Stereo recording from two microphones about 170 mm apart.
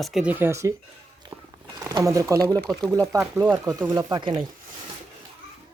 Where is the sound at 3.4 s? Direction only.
20° right (ahead or behind).